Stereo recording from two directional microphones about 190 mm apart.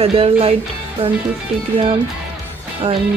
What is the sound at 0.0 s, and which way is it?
Speech, 30° right (ahead or behind).